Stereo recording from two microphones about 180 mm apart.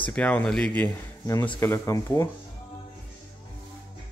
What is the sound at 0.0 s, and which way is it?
Speech, 5° left (ahead or behind).